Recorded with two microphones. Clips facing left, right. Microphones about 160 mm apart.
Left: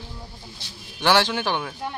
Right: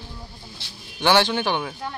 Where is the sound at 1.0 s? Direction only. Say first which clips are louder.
Right 1 dB; 5° left (ahead or behind).